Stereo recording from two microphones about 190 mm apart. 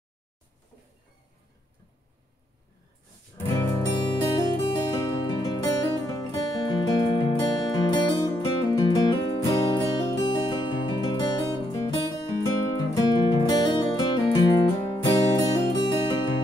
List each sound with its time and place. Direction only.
3.3 s music: 10° left (ahead or behind)